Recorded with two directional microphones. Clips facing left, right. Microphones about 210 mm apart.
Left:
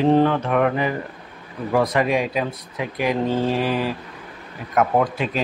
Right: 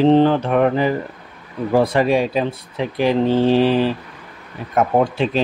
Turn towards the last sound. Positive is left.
turn(degrees=-30)  # may be behind; listen again after turning